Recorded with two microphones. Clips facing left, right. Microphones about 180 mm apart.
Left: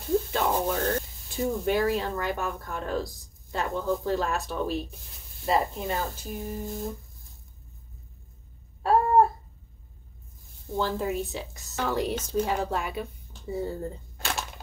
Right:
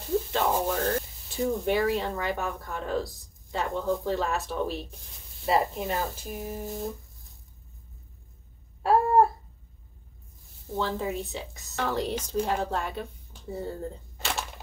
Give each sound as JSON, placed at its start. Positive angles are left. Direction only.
{"t": 0.3, "sound": "speech", "side_deg": 0}
{"t": 10.7, "sound": "a woman's voice", "side_deg": 0}